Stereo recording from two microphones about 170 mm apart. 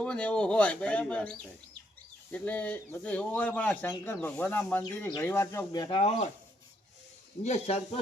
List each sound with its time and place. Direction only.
0.0 s speech: 5° left (ahead or behind); by 6.0 s 25° left (ahead or behind)
7.4 s speech: 40° left (ahead or behind)